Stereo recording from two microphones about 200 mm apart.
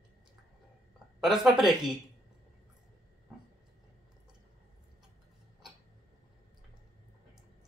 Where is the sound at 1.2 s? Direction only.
Centre (ahead or behind).